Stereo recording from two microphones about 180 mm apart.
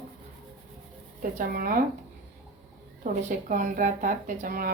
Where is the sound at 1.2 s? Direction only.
50° right (ahead or behind).